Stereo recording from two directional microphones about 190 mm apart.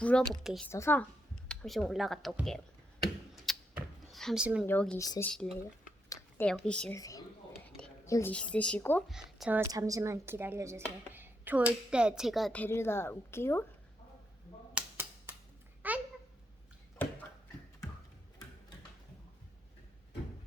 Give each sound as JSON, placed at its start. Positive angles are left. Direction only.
{"t": 0.0, "sound": "speech", "side_deg": 5}
{"t": 0.7, "sound": "a woman's voice", "side_deg": 10}
{"t": 1.5, "sound": "speech", "side_deg": 0}
{"t": 3.5, "sound": "a sound", "side_deg": 0}
{"t": 4.1, "sound": "a woman's voice", "side_deg": 0}
{"t": 4.9, "sound": "speech", "side_deg": 20}
{"t": 5.2, "sound": "speech", "side_deg": 5}
{"t": 6.1, "sound": "a sound", "side_deg": 15}
{"t": 6.5, "sound": "speech", "side_deg": 5}
{"t": 6.9, "sound": "a woman's voice", "side_deg": 20}
{"t": 9.0, "sound": "speech", "side_deg": 0}
{"t": 9.6, "sound": "speech", "side_deg": -20}
{"t": 14.8, "sound": "a sound", "side_deg": -5}
{"t": 15.8, "sound": "babbling", "side_deg": -10}